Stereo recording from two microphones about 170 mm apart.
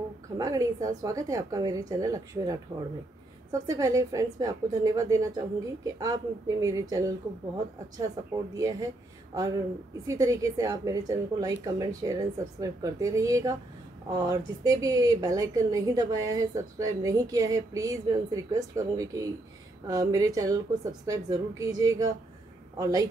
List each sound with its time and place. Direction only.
0.4 s speech: 20° right (ahead or behind)
3.6 s speech: 20° right (ahead or behind)
8.5 s speech: 20° right (ahead or behind)